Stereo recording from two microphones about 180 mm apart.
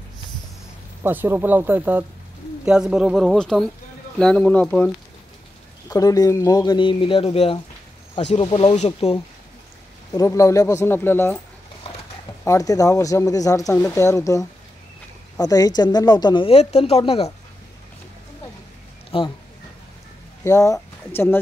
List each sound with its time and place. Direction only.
1.0 s speech: 10° right (ahead or behind); by 4.9 s 5° left (ahead or behind)
5.9 s speech: 20° left (ahead or behind); by 9.2 s 35° left (ahead or behind)
10.1 s speech: 20° left (ahead or behind)
12.4 s speech: 20° left (ahead or behind); by 17.3 s 35° left (ahead or behind)
19.1 s speech: 30° left (ahead or behind)
20.4 s speech: 15° left (ahead or behind)